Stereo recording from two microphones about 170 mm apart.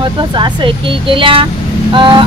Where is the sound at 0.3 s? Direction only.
30° right (ahead or behind).